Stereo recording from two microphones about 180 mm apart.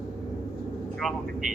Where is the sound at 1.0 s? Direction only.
Centre (ahead or behind).